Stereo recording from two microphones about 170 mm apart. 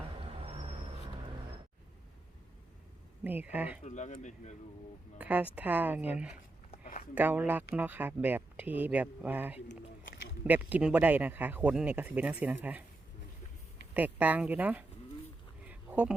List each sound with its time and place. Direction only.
0.3 s vehicle: 35° right (ahead or behind)
3.2 s speech: 10° right (ahead or behind)
3.8 s speech: 45° left (ahead or behind)
5.1 s speech: 10° right (ahead or behind)
13.9 s speech: 10° right (ahead or behind)
15.6 s a sound: 10° right (ahead or behind)